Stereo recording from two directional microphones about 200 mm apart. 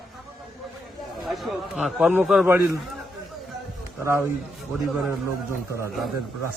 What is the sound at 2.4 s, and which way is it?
Speech, 10° right (ahead or behind).